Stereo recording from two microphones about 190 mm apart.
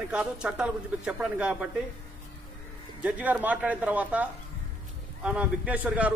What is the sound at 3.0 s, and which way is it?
Speech, 5° right (ahead or behind).